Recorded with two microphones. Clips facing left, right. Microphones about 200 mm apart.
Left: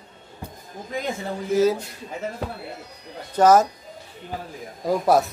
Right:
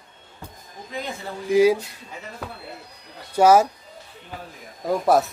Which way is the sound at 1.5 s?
15° right (ahead or behind).